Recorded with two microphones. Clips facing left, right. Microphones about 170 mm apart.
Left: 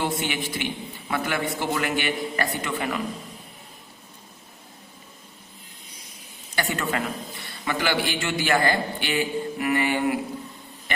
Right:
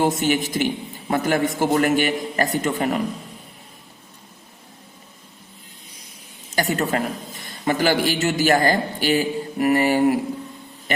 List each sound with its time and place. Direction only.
0.0 s a man's voice: 45° right (ahead or behind)
6.5 s a man's voice: 40° right (ahead or behind)